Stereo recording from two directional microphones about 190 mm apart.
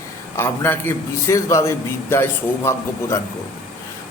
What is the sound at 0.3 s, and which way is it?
A man's voice, 10° left (ahead or behind).